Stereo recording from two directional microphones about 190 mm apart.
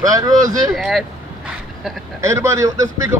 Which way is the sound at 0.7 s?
Centre (ahead or behind).